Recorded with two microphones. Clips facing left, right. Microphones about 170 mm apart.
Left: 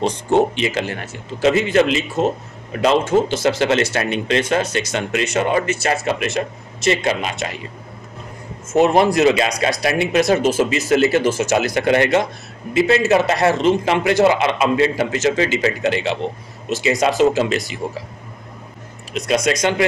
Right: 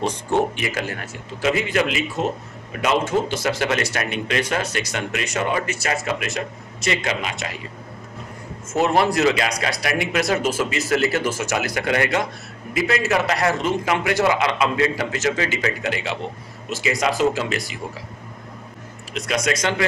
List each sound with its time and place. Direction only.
0.0 s speech: 20° left (ahead or behind)
8.7 s speech: 20° left (ahead or behind)
19.1 s speech: 25° left (ahead or behind)